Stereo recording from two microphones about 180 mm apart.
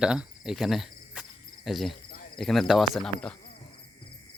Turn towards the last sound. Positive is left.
turn(degrees=5)  # may be behind; listen again after turning